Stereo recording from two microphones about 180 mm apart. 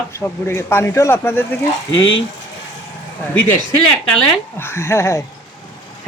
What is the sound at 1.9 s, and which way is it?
Speech, 90° left.